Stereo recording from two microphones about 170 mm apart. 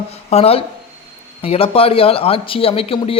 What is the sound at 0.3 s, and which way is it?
Speech, 35° left (ahead or behind).